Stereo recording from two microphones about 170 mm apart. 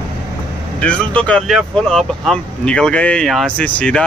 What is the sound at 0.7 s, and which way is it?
Speech, 5° left (ahead or behind).